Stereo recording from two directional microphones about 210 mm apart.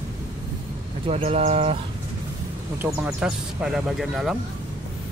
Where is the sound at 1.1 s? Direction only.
30° right (ahead or behind).